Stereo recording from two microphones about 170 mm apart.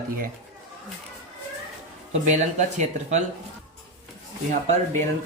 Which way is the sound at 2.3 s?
45° right (ahead or behind).